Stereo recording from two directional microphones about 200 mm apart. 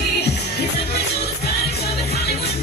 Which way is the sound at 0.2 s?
55° left (ahead or behind).